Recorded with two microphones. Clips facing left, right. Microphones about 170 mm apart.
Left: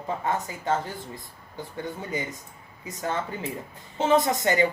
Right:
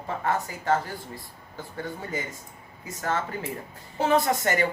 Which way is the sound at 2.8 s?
20° left (ahead or behind).